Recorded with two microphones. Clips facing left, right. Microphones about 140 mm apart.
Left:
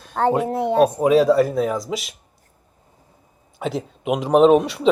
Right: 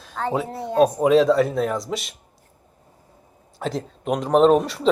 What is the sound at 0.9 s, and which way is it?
Speech, 5° left (ahead or behind).